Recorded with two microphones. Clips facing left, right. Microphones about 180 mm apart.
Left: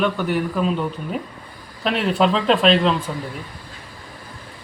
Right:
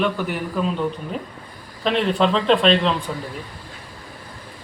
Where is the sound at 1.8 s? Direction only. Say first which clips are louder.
Even; 5° left (ahead or behind).